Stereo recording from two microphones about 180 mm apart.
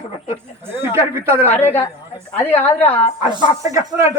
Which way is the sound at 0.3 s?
15° right (ahead or behind).